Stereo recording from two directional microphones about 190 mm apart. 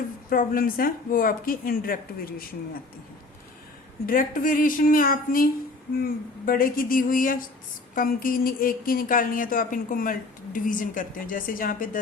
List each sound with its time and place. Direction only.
0.3 s speech: 50° left (ahead or behind)
4.0 s speech: 45° left (ahead or behind)